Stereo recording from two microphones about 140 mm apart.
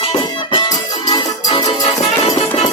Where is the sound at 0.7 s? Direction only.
25° left (ahead or behind).